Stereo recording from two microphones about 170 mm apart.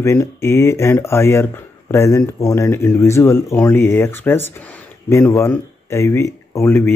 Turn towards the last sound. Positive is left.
turn(degrees=15)  # may be behind; listen again after turning